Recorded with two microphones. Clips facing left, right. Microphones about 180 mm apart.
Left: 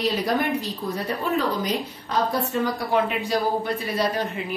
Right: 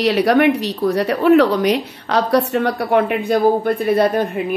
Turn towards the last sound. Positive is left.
turn(degrees=-55)  # may be behind; listen again after turning